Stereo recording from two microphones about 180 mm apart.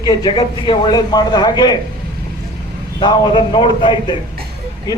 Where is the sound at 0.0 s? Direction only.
20° left (ahead or behind).